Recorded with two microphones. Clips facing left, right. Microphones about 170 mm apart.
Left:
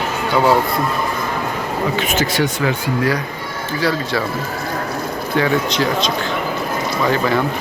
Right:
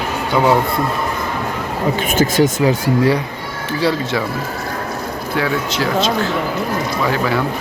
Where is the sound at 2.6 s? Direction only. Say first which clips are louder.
Right 4 dB; 30° right (ahead or behind).